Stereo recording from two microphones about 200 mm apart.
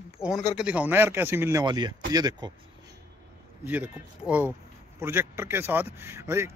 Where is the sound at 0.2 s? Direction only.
5° right (ahead or behind); by 2.5 s 20° right (ahead or behind).